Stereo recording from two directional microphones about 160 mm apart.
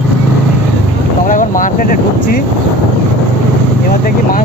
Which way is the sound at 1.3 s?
55° left (ahead or behind).